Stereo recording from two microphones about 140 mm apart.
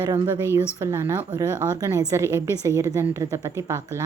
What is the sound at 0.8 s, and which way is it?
A woman's voice, 20° right (ahead or behind).